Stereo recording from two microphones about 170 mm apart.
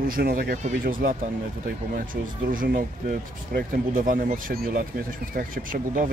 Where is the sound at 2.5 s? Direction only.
55° right (ahead or behind).